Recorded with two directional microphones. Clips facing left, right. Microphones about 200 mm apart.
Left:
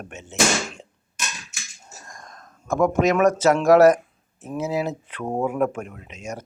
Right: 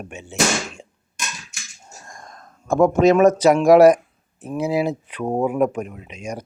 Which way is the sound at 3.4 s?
15° right (ahead or behind).